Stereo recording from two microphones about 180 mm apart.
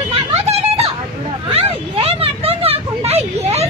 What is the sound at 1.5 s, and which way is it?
Vehicle, 30° right (ahead or behind).